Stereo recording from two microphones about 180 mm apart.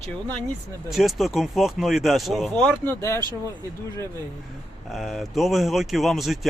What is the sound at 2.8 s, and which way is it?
Speech, 15° left (ahead or behind).